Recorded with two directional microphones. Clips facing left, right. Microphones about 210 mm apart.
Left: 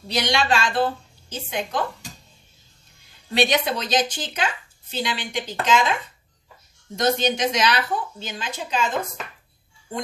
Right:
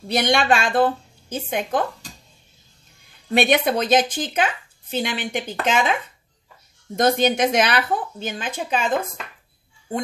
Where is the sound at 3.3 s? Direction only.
55° right (ahead or behind).